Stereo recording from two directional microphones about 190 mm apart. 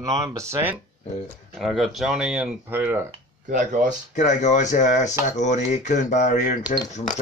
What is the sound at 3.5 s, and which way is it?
Speech, 45° right (ahead or behind).